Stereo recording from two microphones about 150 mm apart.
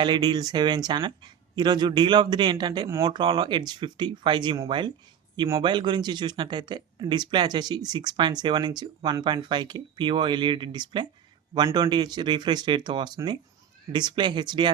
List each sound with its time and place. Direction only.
0.0 s speech: 30° right (ahead or behind)